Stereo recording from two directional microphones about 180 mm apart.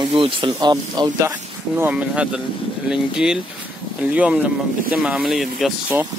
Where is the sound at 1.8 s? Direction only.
5° right (ahead or behind).